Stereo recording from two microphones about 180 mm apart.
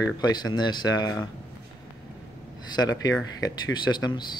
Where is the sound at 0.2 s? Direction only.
25° left (ahead or behind).